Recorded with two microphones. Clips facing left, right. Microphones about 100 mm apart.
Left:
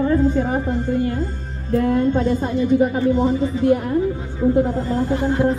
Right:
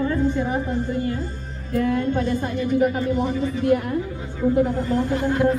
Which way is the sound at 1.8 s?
30° left (ahead or behind).